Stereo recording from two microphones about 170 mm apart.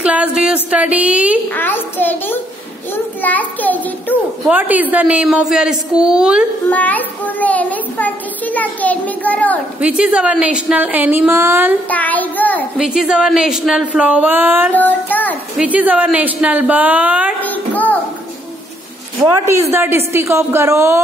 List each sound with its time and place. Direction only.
0.0 s a woman's voice: 5° right (ahead or behind)
1.5 s a child's voice: 10° left (ahead or behind)
4.5 s speech: 10° right (ahead or behind)
6.7 s a child's voice: 10° left (ahead or behind)
9.8 s a woman's voice: 5° right (ahead or behind)
11.9 s a child's voice: 10° left (ahead or behind)
12.7 s speech: 5° right (ahead or behind)
14.8 s a child's voice: 10° left (ahead or behind)
15.5 s a woman's voice: 10° right (ahead or behind)
17.4 s a child's voice: 10° left (ahead or behind)
19.4 s a woman's voice: 15° right (ahead or behind)